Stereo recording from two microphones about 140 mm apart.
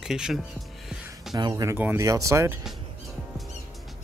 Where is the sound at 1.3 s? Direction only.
25° right (ahead or behind).